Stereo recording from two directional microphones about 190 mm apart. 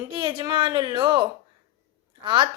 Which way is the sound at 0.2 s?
25° right (ahead or behind).